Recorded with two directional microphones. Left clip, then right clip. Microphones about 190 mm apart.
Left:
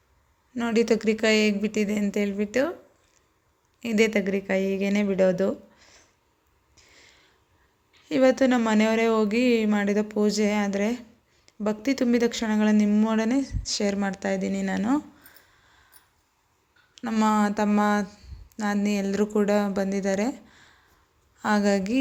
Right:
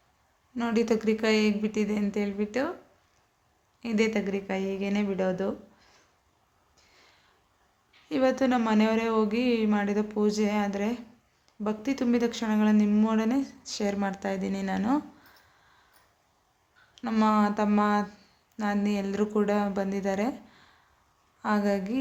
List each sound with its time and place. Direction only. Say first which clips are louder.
0.5 s speech: left 4 dB; 15° left (ahead or behind)
3.8 s speech: left 5 dB; 20° left (ahead or behind)
6.7 s a sound: left 5 dB; 20° left (ahead or behind)
8.0 s speech: left 5 dB; 20° left (ahead or behind)
16.9 s speech: left 1 dB; 15° left (ahead or behind)